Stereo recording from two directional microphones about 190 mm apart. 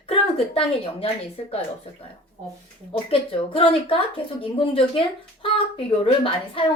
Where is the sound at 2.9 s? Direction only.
30° left (ahead or behind).